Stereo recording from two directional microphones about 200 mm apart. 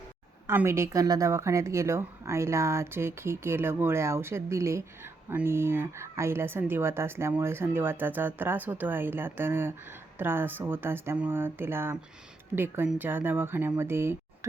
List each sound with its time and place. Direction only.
0.4 s speech: 10° right (ahead or behind)